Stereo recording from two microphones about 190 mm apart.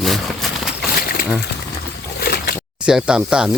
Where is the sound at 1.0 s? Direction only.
50° left (ahead or behind).